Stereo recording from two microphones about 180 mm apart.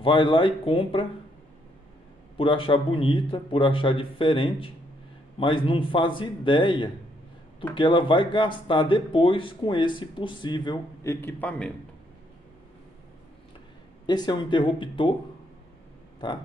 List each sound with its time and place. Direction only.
0.0 s speech: 30° left (ahead or behind)
2.3 s speech: 30° left (ahead or behind)
11.1 s a man's voice: 10° left (ahead or behind)
14.0 s speech: 25° left (ahead or behind)
16.2 s speech: 25° left (ahead or behind)